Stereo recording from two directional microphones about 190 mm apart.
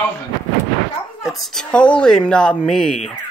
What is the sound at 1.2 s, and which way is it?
A child's voice, centre (ahead or behind).